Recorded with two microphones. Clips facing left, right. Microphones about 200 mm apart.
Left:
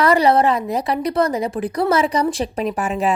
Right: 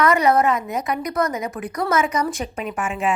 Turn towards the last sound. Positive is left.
turn(degrees=35)  # may be behind; listen again after turning